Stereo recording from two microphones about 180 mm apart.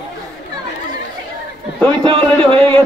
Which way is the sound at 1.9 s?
30° right (ahead or behind).